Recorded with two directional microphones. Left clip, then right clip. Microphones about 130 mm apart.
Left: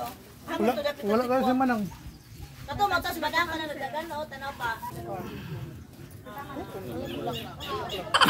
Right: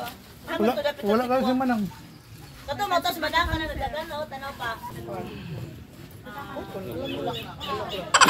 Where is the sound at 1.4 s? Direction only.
10° left (ahead or behind).